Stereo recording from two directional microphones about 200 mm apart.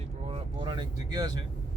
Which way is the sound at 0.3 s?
25° right (ahead or behind).